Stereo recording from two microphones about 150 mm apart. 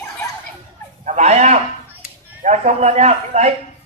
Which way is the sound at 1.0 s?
50° right (ahead or behind).